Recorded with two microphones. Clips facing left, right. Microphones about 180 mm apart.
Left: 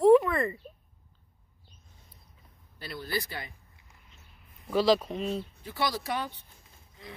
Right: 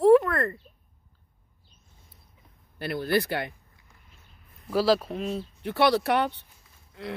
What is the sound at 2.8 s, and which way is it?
Speech, 60° right (ahead or behind).